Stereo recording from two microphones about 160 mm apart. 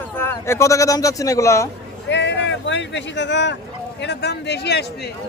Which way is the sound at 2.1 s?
90° left.